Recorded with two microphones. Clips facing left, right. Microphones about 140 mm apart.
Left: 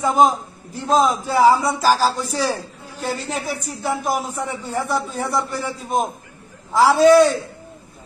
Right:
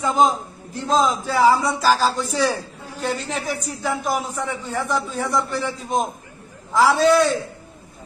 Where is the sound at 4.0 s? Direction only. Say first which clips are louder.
Left 1 dB; 45° left (ahead or behind).